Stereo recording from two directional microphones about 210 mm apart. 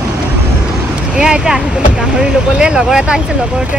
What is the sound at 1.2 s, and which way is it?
Speech, 5° right (ahead or behind).